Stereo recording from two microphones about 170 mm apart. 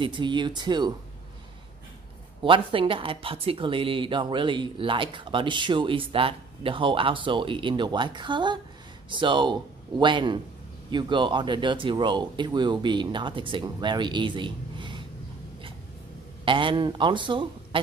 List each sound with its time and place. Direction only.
0.0 s speech: 30° right (ahead or behind)
2.4 s speech: 30° right (ahead or behind)
16.4 s speech: 30° right (ahead or behind)